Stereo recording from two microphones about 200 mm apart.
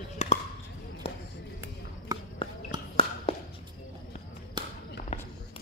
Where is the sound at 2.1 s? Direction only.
20° right (ahead or behind).